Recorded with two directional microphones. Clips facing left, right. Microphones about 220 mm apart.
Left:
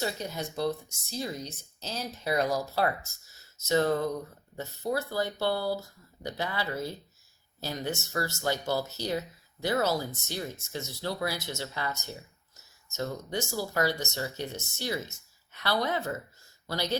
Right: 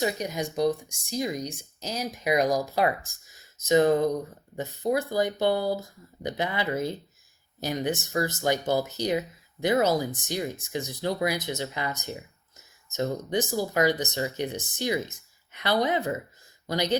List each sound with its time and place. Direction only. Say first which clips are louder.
0.0 s speech: right 5 dB; 15° right (ahead or behind)